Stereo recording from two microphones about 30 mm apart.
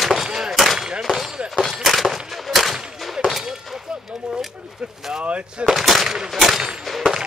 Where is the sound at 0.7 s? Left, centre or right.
Right.